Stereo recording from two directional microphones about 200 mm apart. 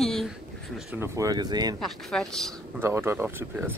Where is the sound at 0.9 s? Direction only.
15° right (ahead or behind).